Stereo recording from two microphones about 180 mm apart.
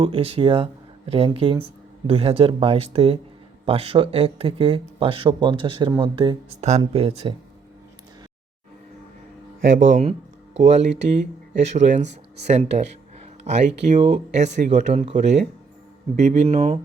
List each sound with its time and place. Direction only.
0.0 s speech: 30° right (ahead or behind)
9.6 s speech: 45° right (ahead or behind)